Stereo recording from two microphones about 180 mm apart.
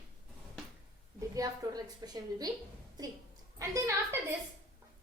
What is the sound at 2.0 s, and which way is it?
Speech, 20° right (ahead or behind).